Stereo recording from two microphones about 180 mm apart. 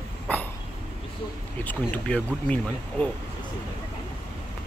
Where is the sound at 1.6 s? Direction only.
5° left (ahead or behind).